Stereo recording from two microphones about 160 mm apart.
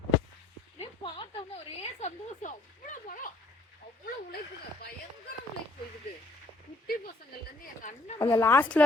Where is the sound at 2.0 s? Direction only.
50° left (ahead or behind).